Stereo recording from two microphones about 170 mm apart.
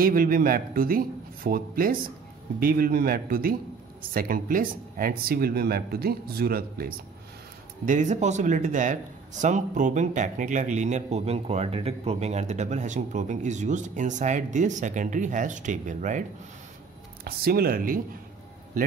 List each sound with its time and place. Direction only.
0.0 s speech: 55° right (ahead or behind)
7.8 s a man's voice: 50° right (ahead or behind)
17.2 s speech: 65° right (ahead or behind)